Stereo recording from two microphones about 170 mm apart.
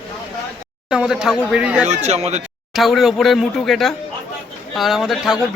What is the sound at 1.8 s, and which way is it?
Speech, 40° right (ahead or behind).